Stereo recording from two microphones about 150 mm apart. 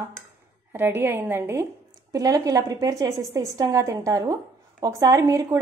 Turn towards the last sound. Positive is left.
turn(degrees=-25)  # may be behind; listen again after turning